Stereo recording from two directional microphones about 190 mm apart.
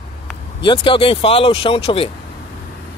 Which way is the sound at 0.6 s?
25° left (ahead or behind).